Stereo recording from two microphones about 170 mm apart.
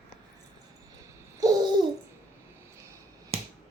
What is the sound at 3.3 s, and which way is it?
Finger snapping, 35° right (ahead or behind).